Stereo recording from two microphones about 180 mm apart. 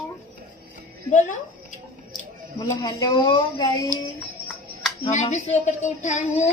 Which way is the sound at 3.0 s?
20° left (ahead or behind).